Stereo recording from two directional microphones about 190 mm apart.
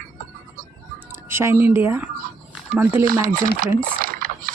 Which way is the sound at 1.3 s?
15° right (ahead or behind).